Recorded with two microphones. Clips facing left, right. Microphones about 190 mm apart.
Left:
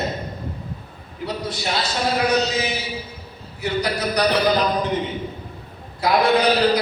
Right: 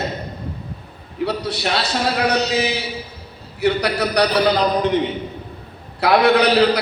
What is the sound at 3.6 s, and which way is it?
Speech, 65° right (ahead or behind).